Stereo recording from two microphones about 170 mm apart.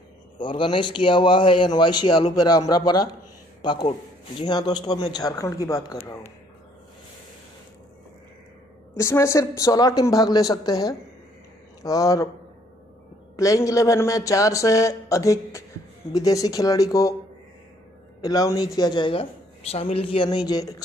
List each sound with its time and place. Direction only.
0.4 s a woman's voice: 30° left (ahead or behind)
8.9 s a woman's voice: 15° left (ahead or behind)
13.4 s a woman's voice: 20° left (ahead or behind)
18.2 s a woman's voice: 20° left (ahead or behind)